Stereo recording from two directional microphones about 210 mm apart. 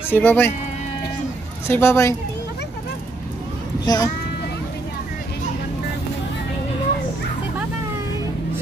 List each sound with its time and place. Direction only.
0.1 s speech: 10° left (ahead or behind)
1.7 s speech: 10° left (ahead or behind)
3.8 s a child's voice: 20° left (ahead or behind)